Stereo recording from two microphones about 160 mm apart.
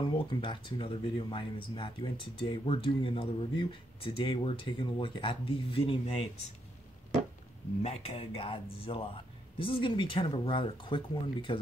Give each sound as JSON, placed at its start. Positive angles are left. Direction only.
{"t": 0.0, "sound": "speech", "side_deg": 35}
{"t": 7.8, "sound": "speech", "side_deg": 35}